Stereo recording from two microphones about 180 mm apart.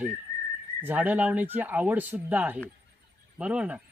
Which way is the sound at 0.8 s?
10° right (ahead or behind).